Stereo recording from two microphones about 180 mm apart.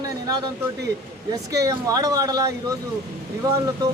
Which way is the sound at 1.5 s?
20° right (ahead or behind).